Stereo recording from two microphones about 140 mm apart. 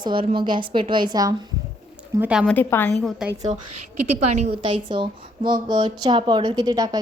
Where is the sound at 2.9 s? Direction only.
Centre (ahead or behind).